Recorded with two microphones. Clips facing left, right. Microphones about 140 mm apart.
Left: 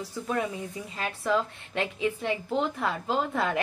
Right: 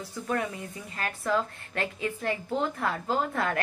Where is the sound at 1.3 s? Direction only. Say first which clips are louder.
Left 1 dB; 20° left (ahead or behind).